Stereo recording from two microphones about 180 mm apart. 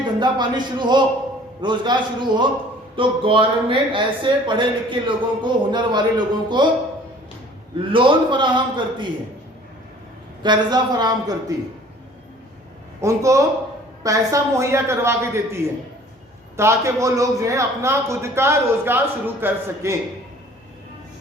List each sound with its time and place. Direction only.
0.2 s speech: 25° right (ahead or behind)
7.8 s speech: 30° right (ahead or behind)
10.4 s speech: 25° right (ahead or behind)
13.0 s a man's voice: 15° right (ahead or behind)